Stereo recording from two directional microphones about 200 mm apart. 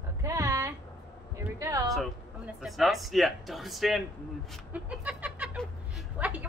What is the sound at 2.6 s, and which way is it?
A woman's voice, centre (ahead or behind).